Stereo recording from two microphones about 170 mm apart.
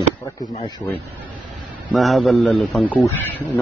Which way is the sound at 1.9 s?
Centre (ahead or behind).